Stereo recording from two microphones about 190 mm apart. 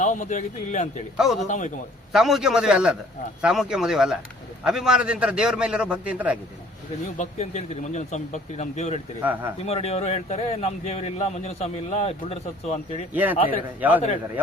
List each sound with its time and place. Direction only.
0.0 s speech: 40° left (ahead or behind)
1.1 s a man's voice: centre (ahead or behind)
1.5 s speech: 40° left (ahead or behind)
2.1 s a man's voice: centre (ahead or behind)
7.2 s speech: 40° left (ahead or behind)
9.2 s speech: 10° right (ahead or behind)
9.6 s speech: 35° left (ahead or behind)
13.2 s speech: 10° right (ahead or behind)